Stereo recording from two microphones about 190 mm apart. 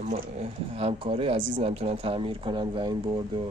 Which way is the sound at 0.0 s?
35° right (ahead or behind).